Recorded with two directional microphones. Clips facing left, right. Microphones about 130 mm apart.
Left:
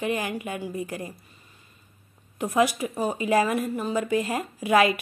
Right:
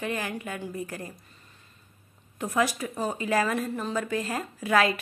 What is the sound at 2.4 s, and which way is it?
Speech, 15° left (ahead or behind).